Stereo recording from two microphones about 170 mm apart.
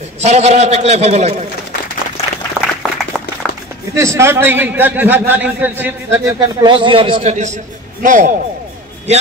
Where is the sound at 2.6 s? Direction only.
15° right (ahead or behind).